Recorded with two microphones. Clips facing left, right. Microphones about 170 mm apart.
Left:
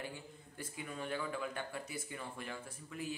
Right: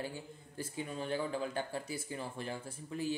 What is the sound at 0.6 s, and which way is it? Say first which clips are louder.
Speech: right 4 dB; 30° right (ahead or behind).